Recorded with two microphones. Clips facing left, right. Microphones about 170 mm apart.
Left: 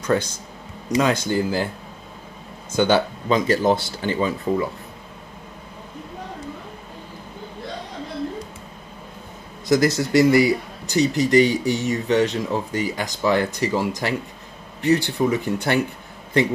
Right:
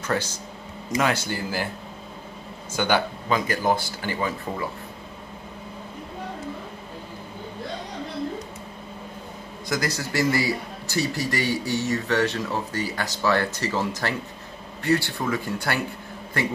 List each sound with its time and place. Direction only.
0.0 s speech: 15° left (ahead or behind)
2.7 s speech: 20° left (ahead or behind)
9.7 s speech: 20° left (ahead or behind)